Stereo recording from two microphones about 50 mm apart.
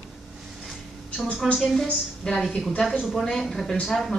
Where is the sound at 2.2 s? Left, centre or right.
Left.